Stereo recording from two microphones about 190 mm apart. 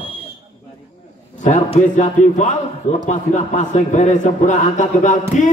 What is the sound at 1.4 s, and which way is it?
A man's voice, 40° left (ahead or behind).